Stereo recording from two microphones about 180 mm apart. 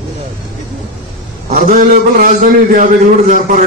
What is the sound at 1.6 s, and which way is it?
A man's voice, 45° right (ahead or behind).